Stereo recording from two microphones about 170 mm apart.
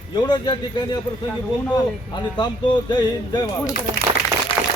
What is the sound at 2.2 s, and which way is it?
Speech, 25° left (ahead or behind).